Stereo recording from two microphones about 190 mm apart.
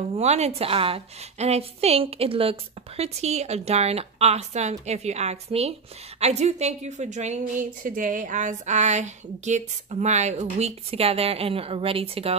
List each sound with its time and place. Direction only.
0.1 s a woman's voice: 35° right (ahead or behind)